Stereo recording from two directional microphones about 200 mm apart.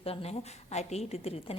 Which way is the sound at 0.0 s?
30° left (ahead or behind).